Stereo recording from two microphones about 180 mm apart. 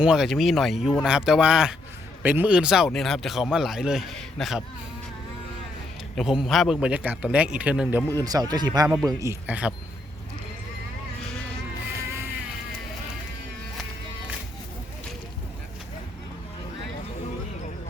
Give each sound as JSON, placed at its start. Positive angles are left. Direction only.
{"t": 0.0, "sound": "speech", "side_deg": -5}
{"t": 6.1, "sound": "a man's voice", "side_deg": 0}
{"t": 8.2, "sound": "a man's voice", "side_deg": -20}
{"t": 11.9, "sound": "music", "side_deg": -15}